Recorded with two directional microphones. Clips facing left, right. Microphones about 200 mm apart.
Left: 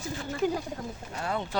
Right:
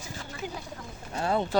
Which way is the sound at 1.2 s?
30° right (ahead or behind).